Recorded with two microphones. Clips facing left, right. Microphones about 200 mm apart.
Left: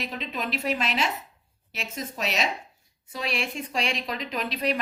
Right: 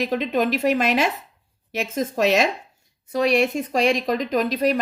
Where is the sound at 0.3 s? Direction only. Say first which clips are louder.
Right 7 dB; 50° right (ahead or behind).